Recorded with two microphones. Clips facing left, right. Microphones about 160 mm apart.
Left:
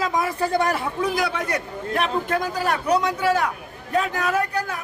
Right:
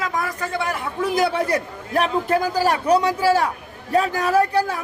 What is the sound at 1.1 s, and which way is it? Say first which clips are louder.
A man's voice: right 5 dB; 30° right (ahead or behind).